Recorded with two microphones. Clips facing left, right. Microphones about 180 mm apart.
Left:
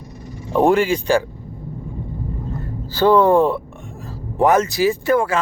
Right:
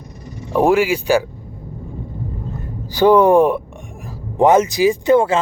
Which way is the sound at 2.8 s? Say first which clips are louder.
Right 2 dB; 15° right (ahead or behind).